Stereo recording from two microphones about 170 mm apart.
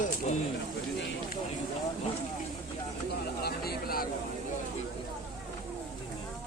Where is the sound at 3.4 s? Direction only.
65° left (ahead or behind).